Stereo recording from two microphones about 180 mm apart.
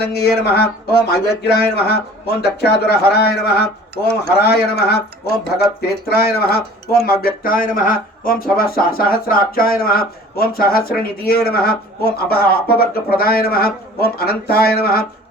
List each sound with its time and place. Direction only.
0.0 s speech: 65° left (ahead or behind)
6.1 s speech: 60° left (ahead or behind)